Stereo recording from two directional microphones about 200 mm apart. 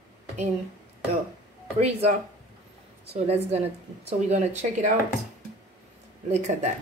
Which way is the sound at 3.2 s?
30° right (ahead or behind).